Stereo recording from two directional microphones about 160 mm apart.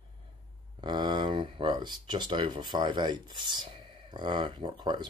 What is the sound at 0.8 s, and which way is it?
Speech, 30° right (ahead or behind).